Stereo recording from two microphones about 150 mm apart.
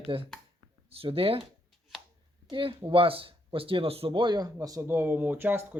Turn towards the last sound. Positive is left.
turn(degrees=-15)  # may be behind; listen again after turning